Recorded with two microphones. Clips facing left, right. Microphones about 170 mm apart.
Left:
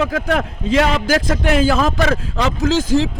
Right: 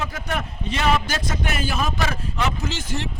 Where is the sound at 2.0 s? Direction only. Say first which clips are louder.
Left 7 dB; 80° left.